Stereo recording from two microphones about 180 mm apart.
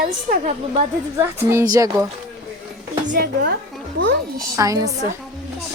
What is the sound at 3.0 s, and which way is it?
Speech, 50° right (ahead or behind).